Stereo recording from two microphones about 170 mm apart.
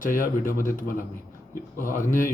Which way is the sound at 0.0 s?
50° left (ahead or behind).